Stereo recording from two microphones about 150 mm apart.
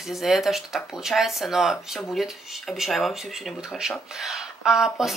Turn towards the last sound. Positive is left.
turn(degrees=0)  # may be behind; listen again after turning